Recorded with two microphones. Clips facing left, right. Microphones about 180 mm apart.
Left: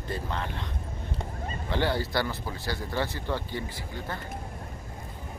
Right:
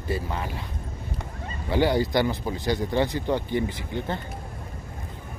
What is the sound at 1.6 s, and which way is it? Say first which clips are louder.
Speech: right 6 dB; 10° right (ahead or behind).